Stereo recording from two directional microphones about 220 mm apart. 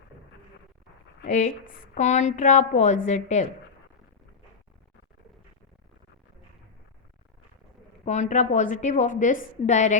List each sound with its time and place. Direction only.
1.3 s a woman's voice: 35° left (ahead or behind)
8.0 s a woman's voice: 30° left (ahead or behind)